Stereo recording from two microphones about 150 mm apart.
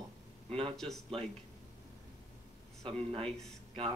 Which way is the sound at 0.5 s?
40° right (ahead or behind).